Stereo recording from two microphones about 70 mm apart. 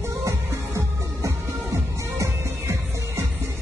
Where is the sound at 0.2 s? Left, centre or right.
Right.